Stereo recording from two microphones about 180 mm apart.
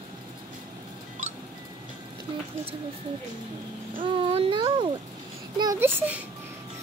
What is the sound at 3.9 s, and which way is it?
Speech, 30° right (ahead or behind).